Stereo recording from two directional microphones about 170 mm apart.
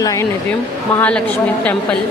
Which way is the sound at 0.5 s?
10° left (ahead or behind).